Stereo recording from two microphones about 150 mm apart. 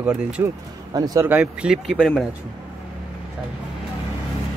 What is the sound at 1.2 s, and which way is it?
Speech, 10° right (ahead or behind).